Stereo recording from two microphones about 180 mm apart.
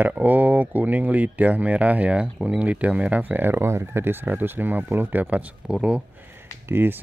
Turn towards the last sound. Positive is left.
turn(degrees=-10)  # may be behind; listen again after turning